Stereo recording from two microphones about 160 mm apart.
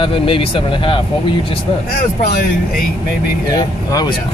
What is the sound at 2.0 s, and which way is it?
Speech, 65° left (ahead or behind).